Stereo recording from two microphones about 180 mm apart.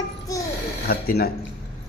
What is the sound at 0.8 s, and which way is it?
Speech, 60° left (ahead or behind).